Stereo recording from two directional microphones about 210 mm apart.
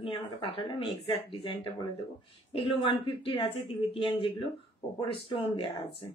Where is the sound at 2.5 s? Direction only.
25° left (ahead or behind).